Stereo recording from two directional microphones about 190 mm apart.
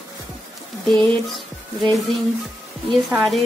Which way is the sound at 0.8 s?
Centre (ahead or behind).